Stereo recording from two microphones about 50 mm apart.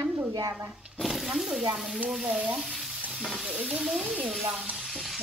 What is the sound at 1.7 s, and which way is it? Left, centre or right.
Speech, centre.